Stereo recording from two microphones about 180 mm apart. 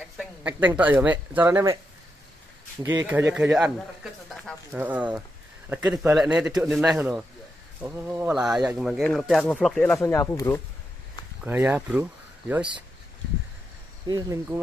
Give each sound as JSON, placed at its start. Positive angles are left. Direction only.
{"t": 0.4, "sound": "speech", "side_deg": -10}
{"t": 3.1, "sound": "speech", "side_deg": -10}
{"t": 11.4, "sound": "speech", "side_deg": -10}
{"t": 14.0, "sound": "speech", "side_deg": -20}